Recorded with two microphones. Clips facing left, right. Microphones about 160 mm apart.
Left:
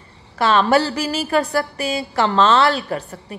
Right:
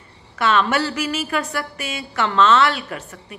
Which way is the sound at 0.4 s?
30° left (ahead or behind).